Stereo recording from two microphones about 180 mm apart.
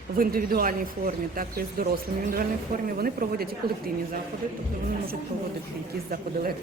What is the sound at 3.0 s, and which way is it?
Speech, 60° right (ahead or behind).